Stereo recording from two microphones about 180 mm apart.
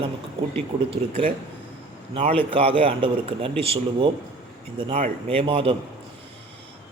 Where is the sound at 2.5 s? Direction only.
30° right (ahead or behind).